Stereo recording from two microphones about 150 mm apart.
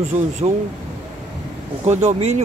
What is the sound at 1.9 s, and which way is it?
Speech, 50° right (ahead or behind).